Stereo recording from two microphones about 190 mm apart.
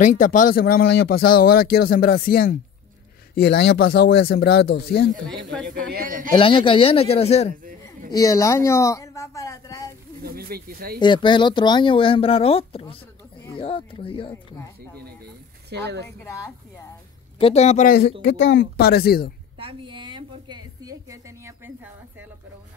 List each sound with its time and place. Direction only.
0.0 s speech: 40° left (ahead or behind)
5.9 s a man's voice: 45° right (ahead or behind)
6.3 s speech: 25° left (ahead or behind)
8.1 s a sound: 20° left (ahead or behind)
10.2 s speech: 50° right (ahead or behind)
11.0 s speech: 25° left (ahead or behind)
15.7 s a woman's voice: 60° right (ahead or behind)
16.3 s speech: 15° left (ahead or behind)
17.4 s speech: 30° left (ahead or behind)
17.8 s speech: 55° left (ahead or behind)
18.2 s speech: 75° left (ahead or behind); by 19.3 s 55° left (ahead or behind)
19.6 s a sound: 25° right (ahead or behind)